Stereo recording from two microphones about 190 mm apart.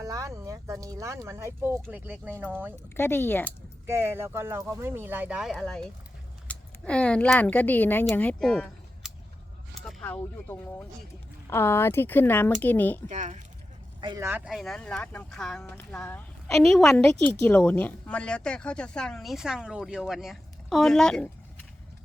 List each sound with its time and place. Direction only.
0.0 s speech: 15° right (ahead or behind)
2.9 s speech: 10° left (ahead or behind)
3.8 s speech: 10° right (ahead or behind); by 13.0 s 10° left (ahead or behind)
13.1 s speech: 40° right (ahead or behind)
14.0 s speech: 25° right (ahead or behind)
14.3 s speech: 5° right (ahead or behind)